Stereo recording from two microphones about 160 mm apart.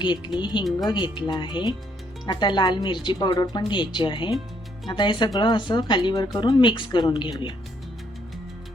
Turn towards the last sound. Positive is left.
turn(degrees=30)  # may be behind; listen again after turning